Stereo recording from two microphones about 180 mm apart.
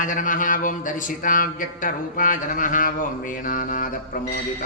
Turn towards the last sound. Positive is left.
turn(degrees=50)  # may be behind; listen again after turning